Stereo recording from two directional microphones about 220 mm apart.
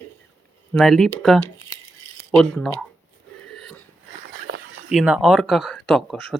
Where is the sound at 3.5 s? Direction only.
Centre (ahead or behind).